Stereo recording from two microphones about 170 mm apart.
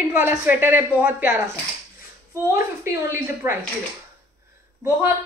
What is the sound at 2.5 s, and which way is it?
A woman's voice, 15° right (ahead or behind).